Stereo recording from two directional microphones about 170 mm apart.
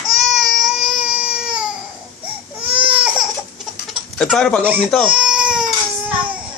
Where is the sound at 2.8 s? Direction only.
30° right (ahead or behind).